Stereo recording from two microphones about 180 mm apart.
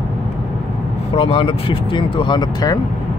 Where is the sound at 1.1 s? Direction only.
30° left (ahead or behind).